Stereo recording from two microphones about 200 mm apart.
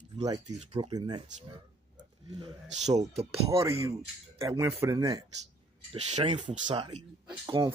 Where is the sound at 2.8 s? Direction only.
35° right (ahead or behind).